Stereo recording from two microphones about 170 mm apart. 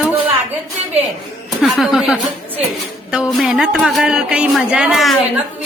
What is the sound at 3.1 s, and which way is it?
A woman's voice, centre (ahead or behind).